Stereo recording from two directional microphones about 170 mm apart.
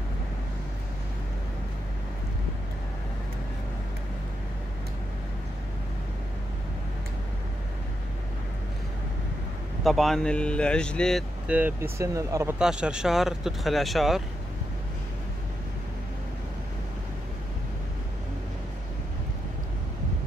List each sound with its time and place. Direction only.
9.8 s speech: centre (ahead or behind)
11.4 s speech: 10° right (ahead or behind)
12.5 s speech: 5° right (ahead or behind)